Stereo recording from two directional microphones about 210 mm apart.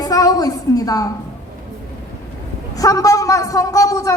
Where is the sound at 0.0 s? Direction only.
15° left (ahead or behind).